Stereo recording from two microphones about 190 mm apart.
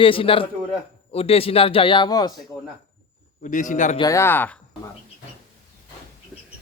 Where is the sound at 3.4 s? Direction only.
40° left (ahead or behind).